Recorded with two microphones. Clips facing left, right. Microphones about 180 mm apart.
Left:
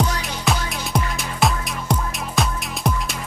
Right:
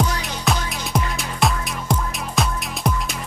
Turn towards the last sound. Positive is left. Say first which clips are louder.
# even
turn(degrees=0)  # may be behind; listen again after turning